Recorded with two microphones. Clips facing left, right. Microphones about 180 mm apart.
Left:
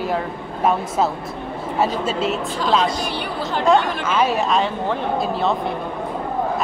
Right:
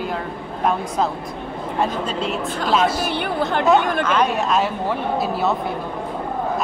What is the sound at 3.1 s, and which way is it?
Speech, 55° right (ahead or behind).